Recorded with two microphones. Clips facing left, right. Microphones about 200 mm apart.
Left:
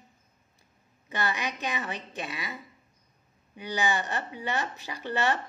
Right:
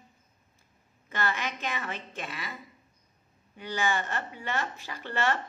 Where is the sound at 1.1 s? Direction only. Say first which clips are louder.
Left 1 dB; 15° left (ahead or behind).